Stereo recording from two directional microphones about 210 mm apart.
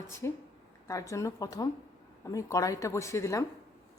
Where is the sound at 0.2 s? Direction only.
15° left (ahead or behind).